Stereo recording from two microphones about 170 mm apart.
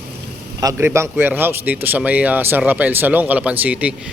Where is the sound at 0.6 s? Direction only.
15° right (ahead or behind).